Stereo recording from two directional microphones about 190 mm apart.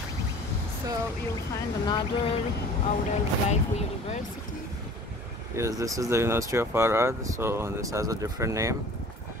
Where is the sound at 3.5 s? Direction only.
35° left (ahead or behind).